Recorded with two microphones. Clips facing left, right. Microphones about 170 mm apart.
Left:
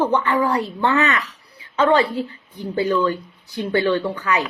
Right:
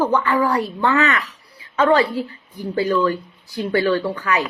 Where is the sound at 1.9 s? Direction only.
25° left (ahead or behind).